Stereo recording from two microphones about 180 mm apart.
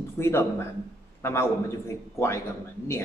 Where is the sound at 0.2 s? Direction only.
15° left (ahead or behind).